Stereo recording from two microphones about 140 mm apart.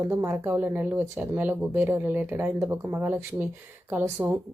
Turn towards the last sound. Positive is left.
turn(degrees=-15)  # may be behind; listen again after turning